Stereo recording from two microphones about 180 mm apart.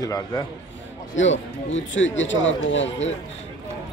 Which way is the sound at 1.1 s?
90° left.